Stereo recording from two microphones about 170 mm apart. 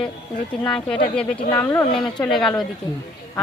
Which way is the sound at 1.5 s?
20° left (ahead or behind).